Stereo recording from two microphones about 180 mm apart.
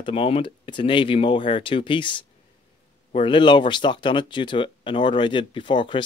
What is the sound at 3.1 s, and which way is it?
Speech, 25° left (ahead or behind).